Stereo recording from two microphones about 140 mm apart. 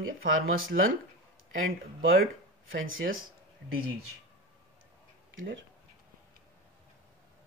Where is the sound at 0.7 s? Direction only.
90° right.